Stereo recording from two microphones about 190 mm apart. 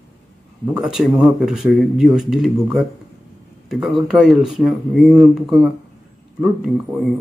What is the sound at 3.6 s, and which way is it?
Speech, centre (ahead or behind).